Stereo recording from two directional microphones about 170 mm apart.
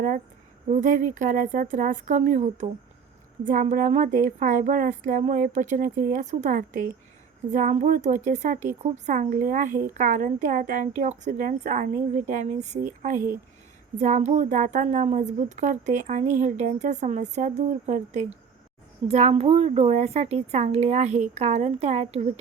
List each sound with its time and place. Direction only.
0.7 s speech: 45° right (ahead or behind)